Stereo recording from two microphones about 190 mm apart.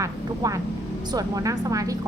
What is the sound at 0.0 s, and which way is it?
A woman's voice, 15° right (ahead or behind).